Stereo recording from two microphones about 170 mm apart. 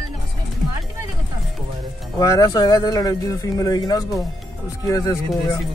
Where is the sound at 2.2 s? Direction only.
20° left (ahead or behind).